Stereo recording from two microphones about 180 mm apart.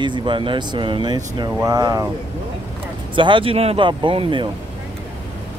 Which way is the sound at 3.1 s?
25° right (ahead or behind).